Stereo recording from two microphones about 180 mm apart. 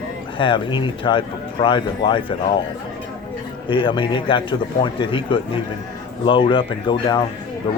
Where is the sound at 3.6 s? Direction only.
25° left (ahead or behind).